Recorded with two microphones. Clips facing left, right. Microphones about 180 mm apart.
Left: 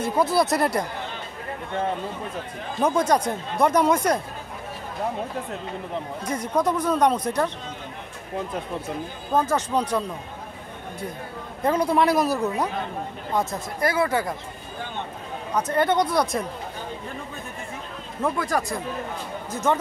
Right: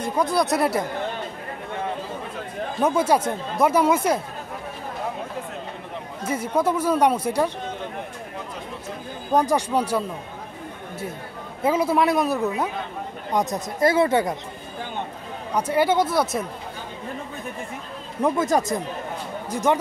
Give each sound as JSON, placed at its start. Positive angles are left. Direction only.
{"t": 0.0, "sound": "speech", "side_deg": 5}
{"t": 2.8, "sound": "speech", "side_deg": -5}
{"t": 6.2, "sound": "speech", "side_deg": -5}
{"t": 9.3, "sound": "speech", "side_deg": -15}
{"t": 11.6, "sound": "speech", "side_deg": -5}
{"t": 13.3, "sound": "speech", "side_deg": -15}
{"t": 15.5, "sound": "speech", "side_deg": -10}
{"t": 18.2, "sound": "speech", "side_deg": -20}